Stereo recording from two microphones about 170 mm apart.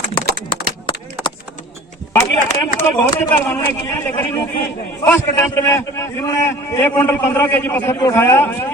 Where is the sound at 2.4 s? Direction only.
55° left (ahead or behind).